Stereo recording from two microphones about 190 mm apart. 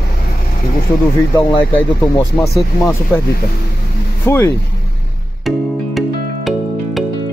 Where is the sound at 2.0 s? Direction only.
15° left (ahead or behind).